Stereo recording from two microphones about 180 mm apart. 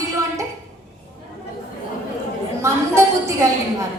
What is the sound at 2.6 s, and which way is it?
A woman's voice, 15° right (ahead or behind).